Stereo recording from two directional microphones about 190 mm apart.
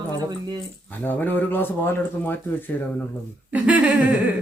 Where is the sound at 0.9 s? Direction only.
10° left (ahead or behind).